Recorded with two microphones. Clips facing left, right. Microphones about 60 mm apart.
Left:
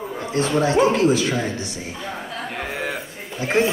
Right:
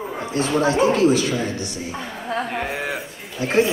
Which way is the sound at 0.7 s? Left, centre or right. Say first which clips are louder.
Right 1 dB; left.